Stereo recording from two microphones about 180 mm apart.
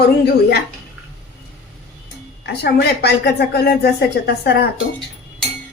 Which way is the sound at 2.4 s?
65° left (ahead or behind).